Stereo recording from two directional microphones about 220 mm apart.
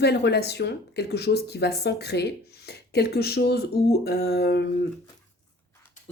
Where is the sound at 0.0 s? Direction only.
50° left (ahead or behind).